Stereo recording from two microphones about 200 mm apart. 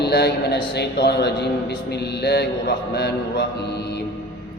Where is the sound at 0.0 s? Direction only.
55° left (ahead or behind).